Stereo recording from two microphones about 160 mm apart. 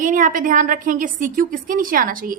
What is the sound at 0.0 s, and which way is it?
A woman's voice, 55° right (ahead or behind).